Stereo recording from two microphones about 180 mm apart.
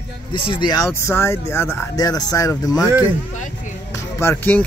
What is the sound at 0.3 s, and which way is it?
Speech, 25° left (ahead or behind).